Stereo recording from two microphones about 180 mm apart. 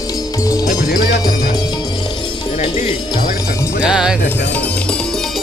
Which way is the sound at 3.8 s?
5° right (ahead or behind).